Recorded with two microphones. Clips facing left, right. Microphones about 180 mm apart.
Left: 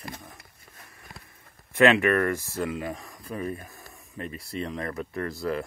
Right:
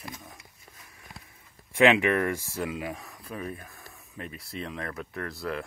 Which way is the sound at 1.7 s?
15° right (ahead or behind).